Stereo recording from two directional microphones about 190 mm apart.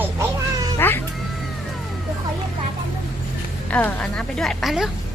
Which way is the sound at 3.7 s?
10° left (ahead or behind).